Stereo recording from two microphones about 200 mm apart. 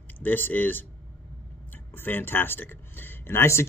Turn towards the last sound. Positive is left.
turn(degrees=10)  # may be behind; listen again after turning